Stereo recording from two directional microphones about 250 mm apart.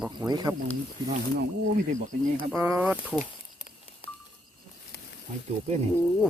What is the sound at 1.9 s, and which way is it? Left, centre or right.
Speech, right.